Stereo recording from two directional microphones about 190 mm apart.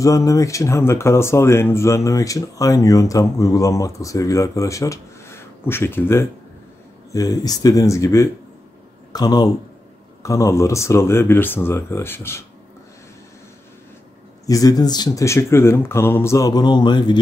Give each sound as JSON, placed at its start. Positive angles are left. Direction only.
{"t": 0.0, "sound": "speech", "side_deg": 15}
{"t": 14.4, "sound": "speech", "side_deg": 20}